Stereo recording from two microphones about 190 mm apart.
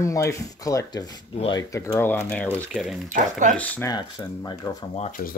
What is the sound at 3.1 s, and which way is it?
Speech, 40° right (ahead or behind).